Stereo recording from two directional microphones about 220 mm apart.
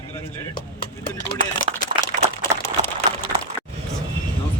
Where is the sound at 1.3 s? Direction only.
40° left (ahead or behind).